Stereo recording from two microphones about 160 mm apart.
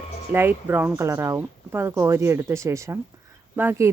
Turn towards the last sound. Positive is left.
turn(degrees=-15)  # may be behind; listen again after turning